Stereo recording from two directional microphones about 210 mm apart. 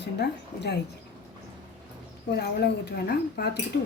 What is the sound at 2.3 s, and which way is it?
A woman's voice, 50° left (ahead or behind).